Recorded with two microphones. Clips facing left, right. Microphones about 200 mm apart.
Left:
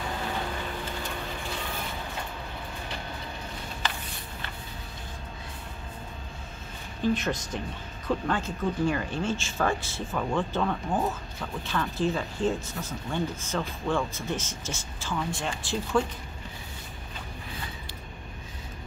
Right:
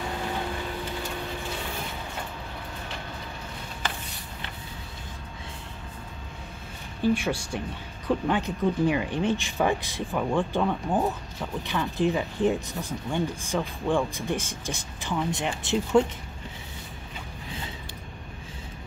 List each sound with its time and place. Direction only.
7.0 s speech: 10° right (ahead or behind)